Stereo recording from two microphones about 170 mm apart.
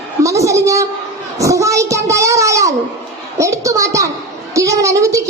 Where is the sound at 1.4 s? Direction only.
20° right (ahead or behind).